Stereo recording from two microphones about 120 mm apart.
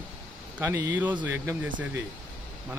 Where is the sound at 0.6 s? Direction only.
20° right (ahead or behind).